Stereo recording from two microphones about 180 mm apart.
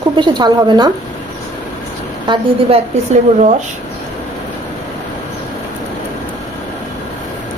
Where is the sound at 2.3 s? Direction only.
35° right (ahead or behind).